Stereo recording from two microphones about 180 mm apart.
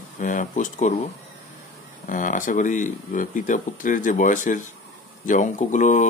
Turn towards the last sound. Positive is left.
turn(degrees=45)  # may be behind; listen again after turning